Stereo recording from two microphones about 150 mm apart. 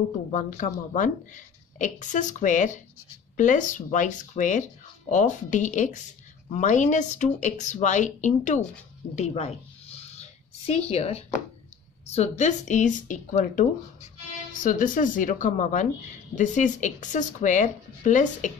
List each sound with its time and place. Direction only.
0.3 s a woman's voice: 60° left (ahead or behind)
9.1 s a sound: 45° left (ahead or behind)
10.7 s a woman's voice: 45° left (ahead or behind)